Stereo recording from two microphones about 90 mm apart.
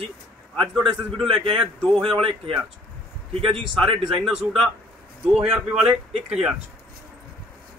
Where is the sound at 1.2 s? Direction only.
75° right (ahead or behind).